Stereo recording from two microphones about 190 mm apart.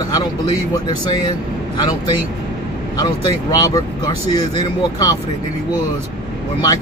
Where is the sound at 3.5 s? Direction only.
20° left (ahead or behind).